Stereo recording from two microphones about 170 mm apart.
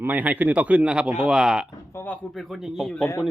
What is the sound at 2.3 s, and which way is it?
Speech, centre (ahead or behind).